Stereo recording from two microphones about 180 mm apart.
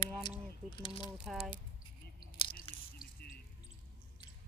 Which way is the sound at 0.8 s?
30° left (ahead or behind).